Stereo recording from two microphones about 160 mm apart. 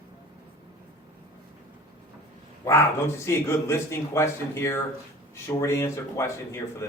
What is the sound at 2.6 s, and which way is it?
Speech, 15° left (ahead or behind).